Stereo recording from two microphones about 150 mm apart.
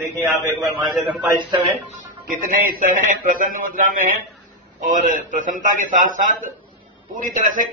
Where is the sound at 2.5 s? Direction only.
70° right (ahead or behind).